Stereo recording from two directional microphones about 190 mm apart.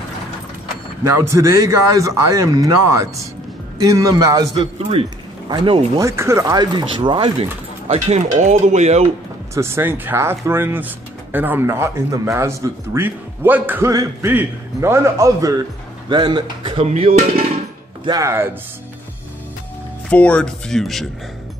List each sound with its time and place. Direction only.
1.0 s speech: 15° right (ahead or behind)
4.6 s speech: 30° right (ahead or behind)
6.0 s speech: 15° right (ahead or behind)
7.9 s speech: 35° right (ahead or behind)
9.5 s speech: 15° right (ahead or behind); by 17.1 s 30° right (ahead or behind)
18.0 s speech: 15° right (ahead or behind)
20.1 s speech: 5° left (ahead or behind)